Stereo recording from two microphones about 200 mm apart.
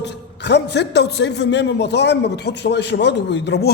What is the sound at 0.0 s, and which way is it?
A man's voice, 60° left (ahead or behind).